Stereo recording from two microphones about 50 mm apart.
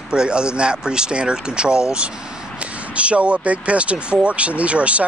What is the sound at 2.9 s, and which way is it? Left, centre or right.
Speech, right.